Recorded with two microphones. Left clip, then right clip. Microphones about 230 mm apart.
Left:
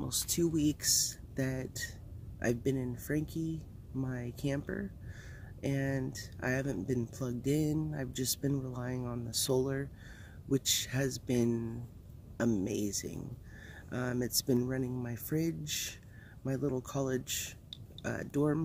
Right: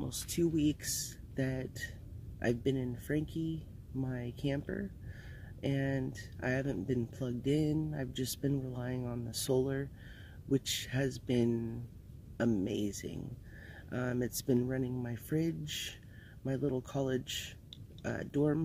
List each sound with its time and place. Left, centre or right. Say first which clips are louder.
0.0 s speech: left 1 dB; centre